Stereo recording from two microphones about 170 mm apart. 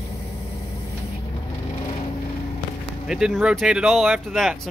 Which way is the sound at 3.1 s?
5° right (ahead or behind).